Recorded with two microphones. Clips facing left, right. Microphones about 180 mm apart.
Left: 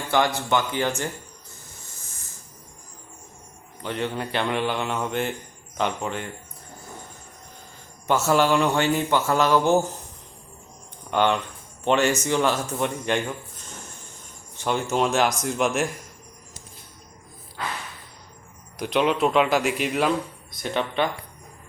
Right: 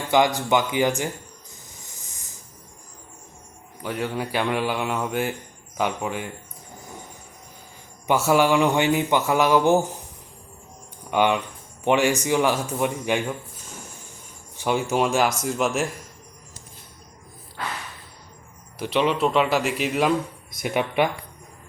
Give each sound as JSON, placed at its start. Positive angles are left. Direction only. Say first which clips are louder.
{"t": 0.1, "sound": "speech", "louder": "right 3 dB", "side_deg": -15}
{"t": 1.7, "sound": "hiss", "louder": "even", "side_deg": -15}
{"t": 3.8, "sound": "speech", "louder": "right 1 dB", "side_deg": -5}
{"t": 6.7, "sound": "a sound", "louder": "right 1 dB", "side_deg": -15}
{"t": 8.0, "sound": "speech", "louder": "right 1 dB", "side_deg": -15}
{"t": 11.1, "sound": "speech", "louder": "right 1 dB", "side_deg": -10}
{"t": 18.8, "sound": "speech", "louder": "even", "side_deg": 0}